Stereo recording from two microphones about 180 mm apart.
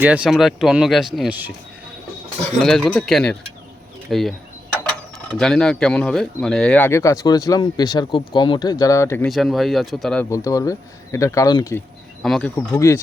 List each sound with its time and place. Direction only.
0.0 s speech: 5° right (ahead or behind)
2.6 s speech: 5° left (ahead or behind)
5.4 s speech: 5° left (ahead or behind)
9.2 s speech: centre (ahead or behind)
10.2 s speech: 20° left (ahead or behind)
12.2 s speech: centre (ahead or behind)
12.5 s speech: 15° left (ahead or behind)